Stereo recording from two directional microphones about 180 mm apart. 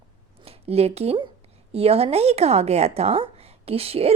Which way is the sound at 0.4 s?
35° right (ahead or behind).